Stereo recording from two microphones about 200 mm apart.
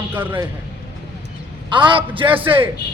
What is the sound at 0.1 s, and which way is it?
Speech, 10° right (ahead or behind).